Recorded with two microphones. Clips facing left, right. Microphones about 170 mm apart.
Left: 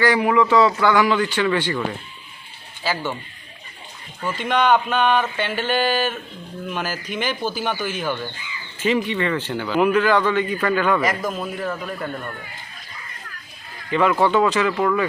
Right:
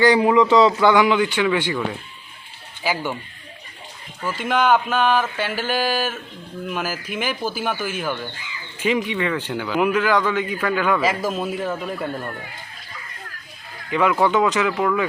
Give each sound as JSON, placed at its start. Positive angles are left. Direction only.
{"t": 0.0, "sound": "speech", "side_deg": -20}
{"t": 2.8, "sound": "speech", "side_deg": -10}
{"t": 4.2, "sound": "speech", "side_deg": -5}
{"t": 11.2, "sound": "speech", "side_deg": -25}
{"t": 11.6, "sound": "speech", "side_deg": -10}
{"t": 13.9, "sound": "speech", "side_deg": -10}